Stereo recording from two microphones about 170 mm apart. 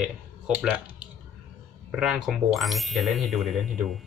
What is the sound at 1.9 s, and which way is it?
Ding, centre (ahead or behind).